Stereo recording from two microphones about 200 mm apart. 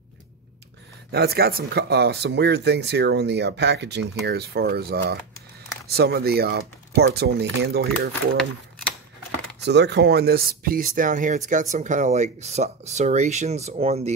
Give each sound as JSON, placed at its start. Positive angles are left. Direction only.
{"t": 1.1, "sound": "speech", "side_deg": -50}
{"t": 9.6, "sound": "speech", "side_deg": -60}